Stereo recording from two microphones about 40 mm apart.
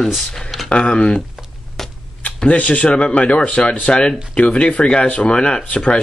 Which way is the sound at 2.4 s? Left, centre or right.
Left.